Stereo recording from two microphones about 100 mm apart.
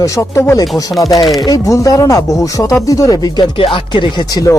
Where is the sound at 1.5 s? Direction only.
35° left (ahead or behind).